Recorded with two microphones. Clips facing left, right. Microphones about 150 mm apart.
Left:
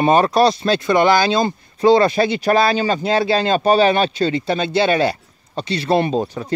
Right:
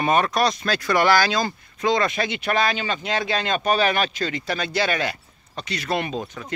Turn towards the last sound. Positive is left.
turn(degrees=35)  # may be behind; listen again after turning